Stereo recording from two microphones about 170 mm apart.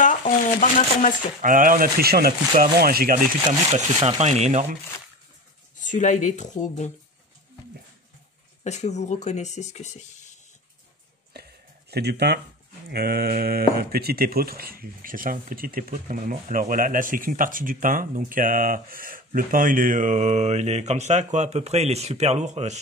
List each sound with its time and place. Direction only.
0.0 s shuffling cards: 50° left (ahead or behind)
1.4 s speech: 55° right (ahead or behind)
3.7 s speech: 40° right (ahead or behind)
5.9 s speech: 45° left (ahead or behind)
8.6 s speech: 40° left (ahead or behind)
11.9 s speech: 75° right (ahead or behind); by 22.8 s 40° right (ahead or behind)